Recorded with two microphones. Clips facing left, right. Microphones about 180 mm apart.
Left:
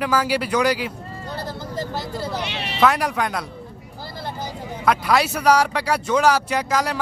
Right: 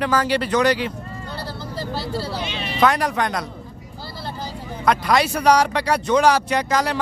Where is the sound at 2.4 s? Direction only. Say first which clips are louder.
Right 1 dB; 70° left (ahead or behind).